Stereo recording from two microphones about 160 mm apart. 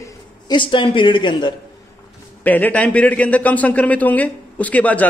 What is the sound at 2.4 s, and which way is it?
A man's voice, 10° left (ahead or behind).